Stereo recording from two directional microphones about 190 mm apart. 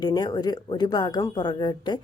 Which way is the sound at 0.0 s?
20° left (ahead or behind).